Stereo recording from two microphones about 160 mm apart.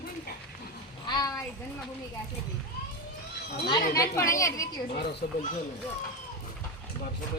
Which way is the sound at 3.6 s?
25° left (ahead or behind).